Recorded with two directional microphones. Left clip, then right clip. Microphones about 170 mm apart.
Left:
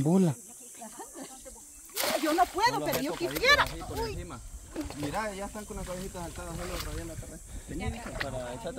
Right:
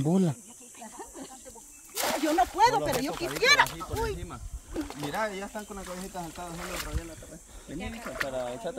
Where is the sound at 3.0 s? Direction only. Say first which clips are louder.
Left 1 dB; 35° right (ahead or behind).